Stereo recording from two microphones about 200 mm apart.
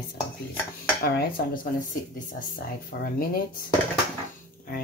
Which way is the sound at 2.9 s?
50° left (ahead or behind).